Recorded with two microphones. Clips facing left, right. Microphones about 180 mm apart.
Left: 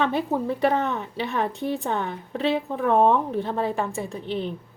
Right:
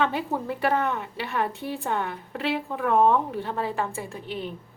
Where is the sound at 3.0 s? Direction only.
20° left (ahead or behind).